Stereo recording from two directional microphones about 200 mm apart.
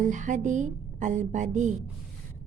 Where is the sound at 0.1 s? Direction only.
40° right (ahead or behind).